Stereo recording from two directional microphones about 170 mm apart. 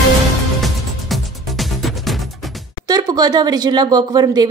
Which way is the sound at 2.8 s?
25° right (ahead or behind).